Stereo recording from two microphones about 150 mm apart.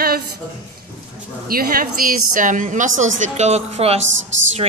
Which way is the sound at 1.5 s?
70° right (ahead or behind).